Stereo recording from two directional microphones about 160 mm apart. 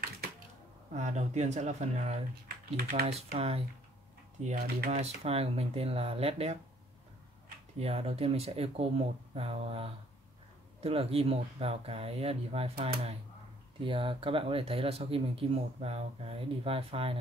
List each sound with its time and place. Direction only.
0.9 s speech: 45° right (ahead or behind)
2.4 s speech: 70° right (ahead or behind)
3.3 s speech: 40° right (ahead or behind)
4.9 s speech: 40° right (ahead or behind)
7.8 s speech: 40° right (ahead or behind)